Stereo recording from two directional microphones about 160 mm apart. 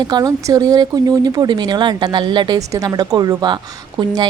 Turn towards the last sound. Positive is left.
turn(degrees=-35)  # may be behind; listen again after turning